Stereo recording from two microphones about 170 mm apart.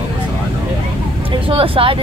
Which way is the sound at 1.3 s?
30° right (ahead or behind).